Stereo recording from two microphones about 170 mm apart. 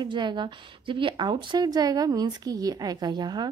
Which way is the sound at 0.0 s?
25° right (ahead or behind).